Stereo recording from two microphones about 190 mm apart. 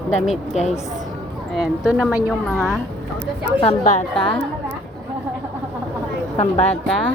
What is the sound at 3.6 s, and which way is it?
Speech, 30° left (ahead or behind).